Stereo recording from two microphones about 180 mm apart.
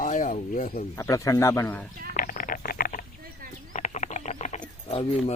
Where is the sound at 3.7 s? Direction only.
45° left (ahead or behind).